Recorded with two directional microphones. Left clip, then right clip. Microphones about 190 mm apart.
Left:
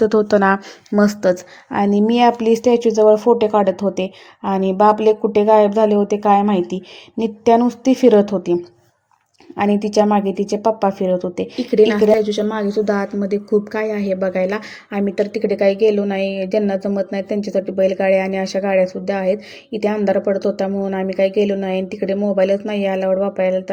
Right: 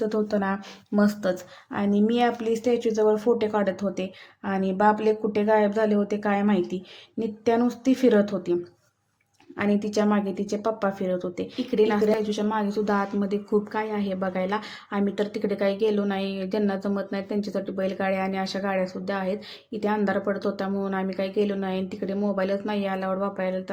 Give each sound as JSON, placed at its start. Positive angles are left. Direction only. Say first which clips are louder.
{"t": 0.0, "sound": "a woman's voice", "louder": "left 12 dB", "side_deg": 35}
{"t": 9.6, "sound": "a woman's voice", "louder": "left 9 dB", "side_deg": 25}
{"t": 16.1, "sound": "speech", "louder": "left 10 dB", "side_deg": -30}
{"t": 16.4, "sound": "a woman's voice", "louder": "left 9 dB", "side_deg": 15}